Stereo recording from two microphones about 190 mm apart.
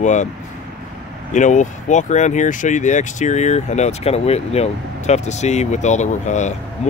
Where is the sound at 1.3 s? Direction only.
40° left (ahead or behind).